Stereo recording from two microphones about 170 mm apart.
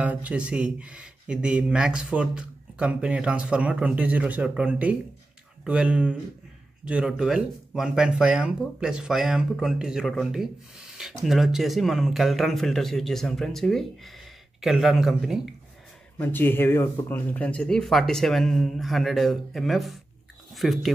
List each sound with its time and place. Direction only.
0.0 s speech: 10° right (ahead or behind)
16.2 s speech: 10° left (ahead or behind)